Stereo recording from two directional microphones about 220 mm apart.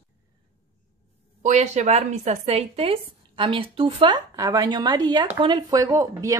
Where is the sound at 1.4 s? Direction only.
30° right (ahead or behind).